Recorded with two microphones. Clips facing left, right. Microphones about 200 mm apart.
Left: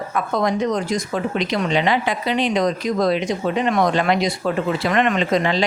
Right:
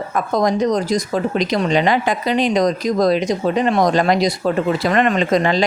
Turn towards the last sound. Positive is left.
turn(degrees=-45)  # may be behind; listen again after turning